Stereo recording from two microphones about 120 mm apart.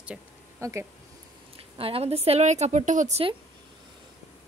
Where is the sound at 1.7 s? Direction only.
50° right (ahead or behind); by 3.2 s 80° right.